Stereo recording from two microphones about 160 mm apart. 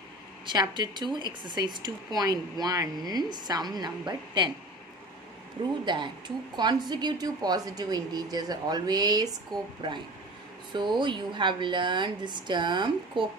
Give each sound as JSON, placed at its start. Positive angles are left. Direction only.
{"t": 0.5, "sound": "speech", "side_deg": -25}
{"t": 5.9, "sound": "speech", "side_deg": -30}